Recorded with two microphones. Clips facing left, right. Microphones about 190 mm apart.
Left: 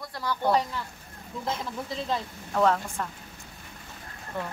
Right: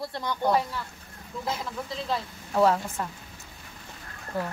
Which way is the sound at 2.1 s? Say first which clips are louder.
Right 2 dB; 5° right (ahead or behind).